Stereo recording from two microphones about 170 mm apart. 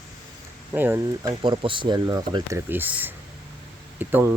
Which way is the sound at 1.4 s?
30° right (ahead or behind).